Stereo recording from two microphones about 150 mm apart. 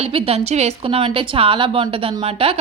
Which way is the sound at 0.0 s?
40° right (ahead or behind).